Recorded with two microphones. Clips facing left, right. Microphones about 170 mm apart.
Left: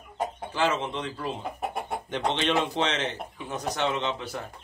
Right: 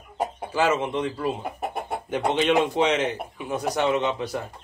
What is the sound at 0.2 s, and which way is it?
Speech, 10° right (ahead or behind).